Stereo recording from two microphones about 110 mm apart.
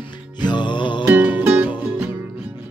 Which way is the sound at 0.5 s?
45° left (ahead or behind).